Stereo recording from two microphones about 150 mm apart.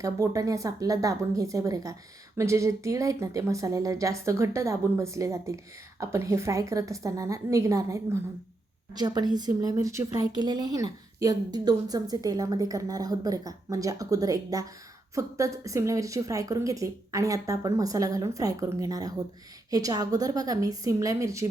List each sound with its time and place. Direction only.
0.0 s speech: 20° right (ahead or behind)